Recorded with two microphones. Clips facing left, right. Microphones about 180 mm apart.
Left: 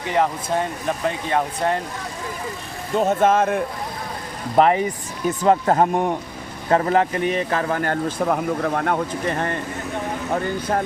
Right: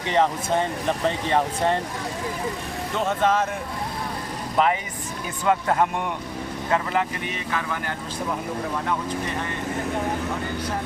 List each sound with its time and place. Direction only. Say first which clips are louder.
0.9 s speech: even; 5° left (ahead or behind)
2.9 s speech: left 5 dB; 40° left (ahead or behind)
4.5 s speech: left 6 dB; 40° left (ahead or behind)